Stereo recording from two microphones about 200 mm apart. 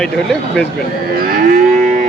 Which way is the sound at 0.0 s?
5° left (ahead or behind).